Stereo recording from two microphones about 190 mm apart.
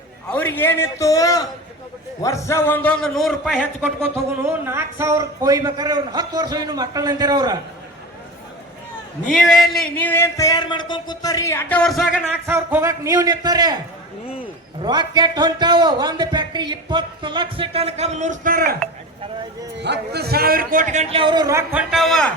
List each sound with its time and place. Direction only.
0.3 s speech: 10° left (ahead or behind)
3.8 s speech: 10° right (ahead or behind)
9.3 s speech: centre (ahead or behind); by 11.8 s 15° left (ahead or behind)
11.8 s a man's voice: centre (ahead or behind); by 13.7 s 20° right (ahead or behind)
14.8 s speech: 25° right (ahead or behind); by 18.8 s 50° right (ahead or behind)
19.7 s a man's voice: 65° right (ahead or behind); by 22.3 s centre (ahead or behind)